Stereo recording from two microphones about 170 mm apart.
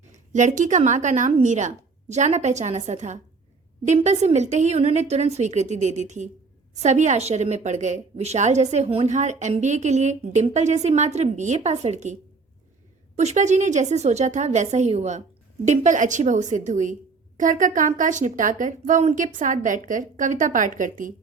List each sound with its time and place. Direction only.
0.3 s a woman's voice: 45° right (ahead or behind)
13.1 s a woman's voice: 45° right (ahead or behind)